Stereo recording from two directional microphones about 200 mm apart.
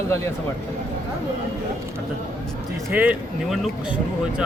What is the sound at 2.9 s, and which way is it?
Speech, 10° right (ahead or behind).